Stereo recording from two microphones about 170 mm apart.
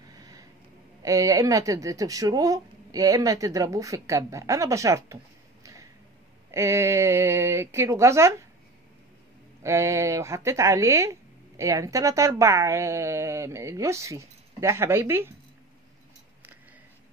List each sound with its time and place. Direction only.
0.2 s a sound: 20° right (ahead or behind)
1.0 s speech: 20° right (ahead or behind)
9.6 s speech: 15° right (ahead or behind)